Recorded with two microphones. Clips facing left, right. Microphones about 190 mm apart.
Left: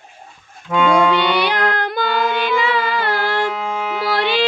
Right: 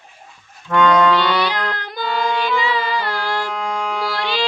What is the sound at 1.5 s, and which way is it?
Music, 60° left (ahead or behind).